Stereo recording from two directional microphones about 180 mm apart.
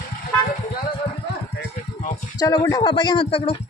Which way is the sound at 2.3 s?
20° left (ahead or behind).